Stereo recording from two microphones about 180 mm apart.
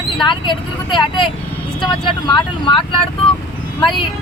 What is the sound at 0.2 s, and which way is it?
Speech, 25° left (ahead or behind).